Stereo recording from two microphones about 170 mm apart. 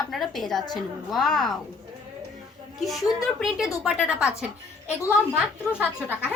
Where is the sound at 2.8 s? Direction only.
Centre (ahead or behind).